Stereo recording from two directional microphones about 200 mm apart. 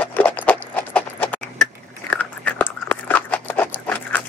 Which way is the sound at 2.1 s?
10° left (ahead or behind).